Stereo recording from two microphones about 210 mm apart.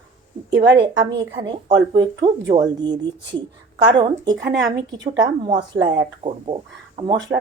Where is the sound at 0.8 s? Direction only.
20° right (ahead or behind).